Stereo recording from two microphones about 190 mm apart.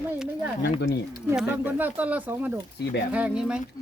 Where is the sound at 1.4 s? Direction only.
10° right (ahead or behind).